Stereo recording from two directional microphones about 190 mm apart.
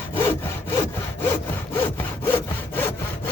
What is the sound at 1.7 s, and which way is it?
Sawing, 10° left (ahead or behind).